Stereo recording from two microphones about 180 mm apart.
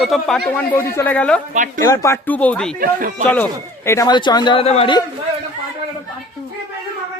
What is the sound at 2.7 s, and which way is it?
Speech, 50° right (ahead or behind).